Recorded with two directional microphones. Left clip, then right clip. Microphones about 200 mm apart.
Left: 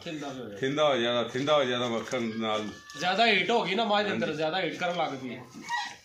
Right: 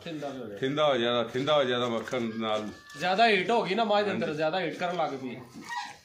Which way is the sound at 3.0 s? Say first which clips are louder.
Right 1 dB; 25° right (ahead or behind).